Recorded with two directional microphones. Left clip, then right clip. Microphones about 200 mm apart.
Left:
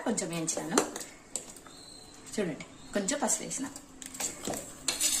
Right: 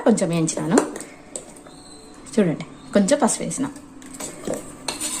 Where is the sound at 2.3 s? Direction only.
55° right (ahead or behind).